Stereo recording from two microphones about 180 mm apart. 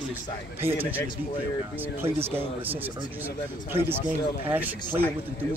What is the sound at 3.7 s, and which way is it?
Speech, 10° right (ahead or behind).